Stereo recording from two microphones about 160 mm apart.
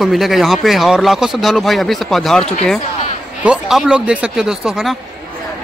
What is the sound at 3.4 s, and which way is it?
Speech, 5° right (ahead or behind).